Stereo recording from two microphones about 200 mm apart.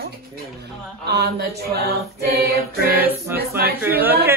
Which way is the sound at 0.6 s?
55° right (ahead or behind).